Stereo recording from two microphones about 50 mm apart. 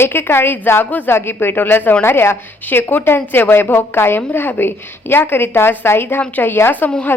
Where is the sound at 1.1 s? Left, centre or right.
Left.